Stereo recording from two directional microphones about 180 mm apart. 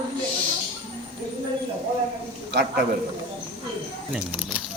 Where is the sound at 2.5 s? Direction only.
70° right (ahead or behind).